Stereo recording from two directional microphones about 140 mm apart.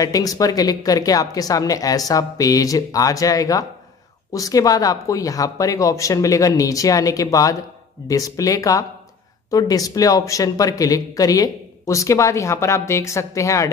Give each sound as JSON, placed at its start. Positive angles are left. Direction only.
{"t": 0.0, "sound": "speech", "side_deg": 25}